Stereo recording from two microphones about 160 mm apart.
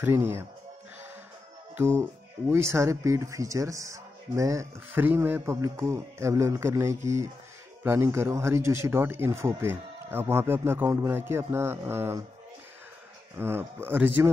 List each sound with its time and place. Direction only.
0.0 s speech: 15° right (ahead or behind)
2.5 s speech: 15° right (ahead or behind)
13.4 s speech: 15° right (ahead or behind)